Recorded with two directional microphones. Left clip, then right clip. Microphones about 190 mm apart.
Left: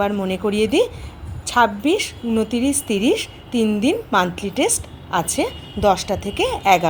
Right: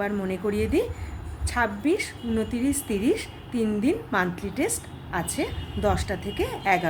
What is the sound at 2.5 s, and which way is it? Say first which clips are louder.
A woman's voice: left 6 dB; 5° right (ahead or behind).